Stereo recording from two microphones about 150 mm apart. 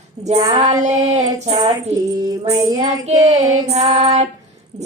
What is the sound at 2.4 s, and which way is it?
Music, 25° right (ahead or behind).